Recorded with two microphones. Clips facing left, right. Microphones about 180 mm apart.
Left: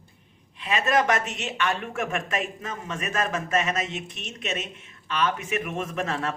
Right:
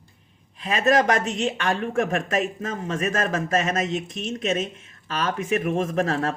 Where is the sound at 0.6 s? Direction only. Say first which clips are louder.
Right 3 dB; 40° right (ahead or behind).